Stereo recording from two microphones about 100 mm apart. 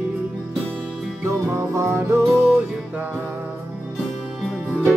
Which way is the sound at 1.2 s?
30° right (ahead or behind).